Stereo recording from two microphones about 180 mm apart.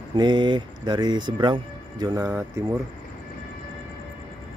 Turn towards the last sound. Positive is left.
turn(degrees=-15)  # may be behind; listen again after turning